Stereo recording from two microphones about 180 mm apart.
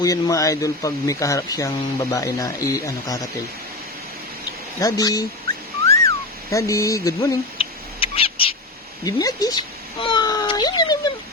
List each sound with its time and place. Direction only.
0.0 s speech: 20° left (ahead or behind)
4.8 s speech: 20° left (ahead or behind)
5.9 s whistling: 15° left (ahead or behind)
7.6 s cat: 30° left (ahead or behind)
9.0 s a sound: 20° left (ahead or behind)